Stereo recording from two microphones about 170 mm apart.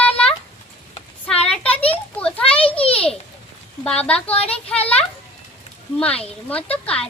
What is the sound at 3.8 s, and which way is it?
Speech, 5° left (ahead or behind).